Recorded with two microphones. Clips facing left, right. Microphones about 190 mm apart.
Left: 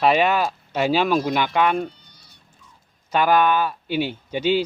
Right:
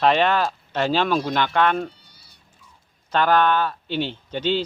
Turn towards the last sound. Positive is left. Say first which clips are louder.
# left 3 dB
turn(degrees=10)  # may be behind; listen again after turning